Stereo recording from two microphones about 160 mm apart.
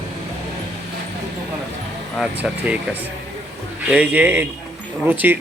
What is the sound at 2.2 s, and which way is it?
A man's voice, 10° right (ahead or behind).